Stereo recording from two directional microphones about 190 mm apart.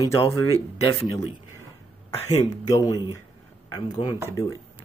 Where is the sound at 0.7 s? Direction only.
35° left (ahead or behind).